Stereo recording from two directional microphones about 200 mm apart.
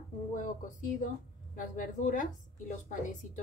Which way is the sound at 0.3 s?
40° left (ahead or behind).